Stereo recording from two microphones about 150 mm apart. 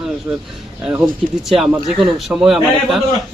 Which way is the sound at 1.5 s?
Centre (ahead or behind).